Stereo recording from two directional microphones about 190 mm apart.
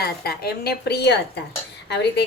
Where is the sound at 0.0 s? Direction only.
55° left (ahead or behind).